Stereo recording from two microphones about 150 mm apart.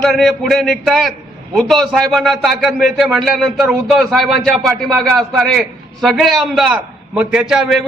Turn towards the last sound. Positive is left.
turn(degrees=0)  # may be behind; listen again after turning